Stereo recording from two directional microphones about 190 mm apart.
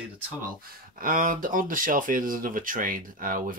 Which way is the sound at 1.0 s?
45° right (ahead or behind).